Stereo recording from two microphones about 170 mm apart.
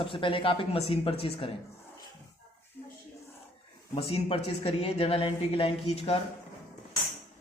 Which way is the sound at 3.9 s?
35° left (ahead or behind).